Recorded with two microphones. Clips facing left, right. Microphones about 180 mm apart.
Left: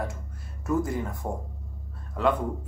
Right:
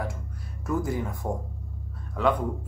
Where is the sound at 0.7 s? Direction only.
Centre (ahead or behind).